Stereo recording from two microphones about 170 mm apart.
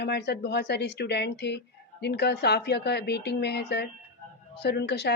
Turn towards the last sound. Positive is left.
turn(degrees=75)  # may be behind; listen again after turning